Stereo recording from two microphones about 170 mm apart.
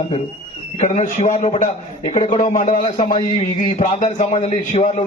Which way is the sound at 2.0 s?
30° left (ahead or behind).